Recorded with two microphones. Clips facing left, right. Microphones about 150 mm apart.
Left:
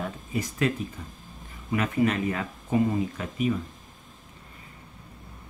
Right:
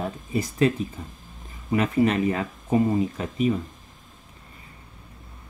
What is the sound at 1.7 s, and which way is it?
Speech, 30° right (ahead or behind).